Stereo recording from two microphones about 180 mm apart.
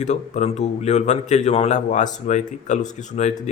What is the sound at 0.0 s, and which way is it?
A man's voice, 40° left (ahead or behind).